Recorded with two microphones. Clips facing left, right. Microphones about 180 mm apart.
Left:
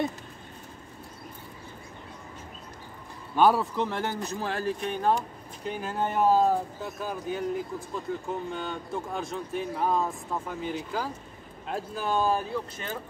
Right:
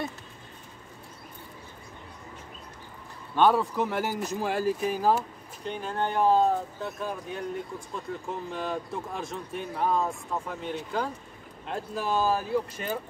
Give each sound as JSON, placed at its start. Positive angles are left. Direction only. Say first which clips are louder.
{"t": 3.3, "sound": "speech", "louder": "even", "side_deg": 5}
{"t": 3.7, "sound": "speech", "louder": "right 1 dB", "side_deg": -5}